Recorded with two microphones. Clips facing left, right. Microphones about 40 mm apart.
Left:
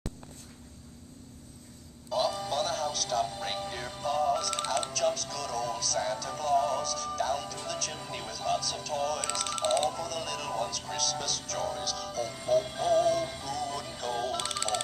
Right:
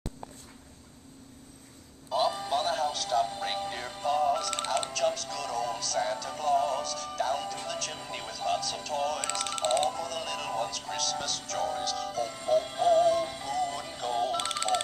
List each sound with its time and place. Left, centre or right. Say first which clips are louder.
2.0 s speech: right 1 dB; centre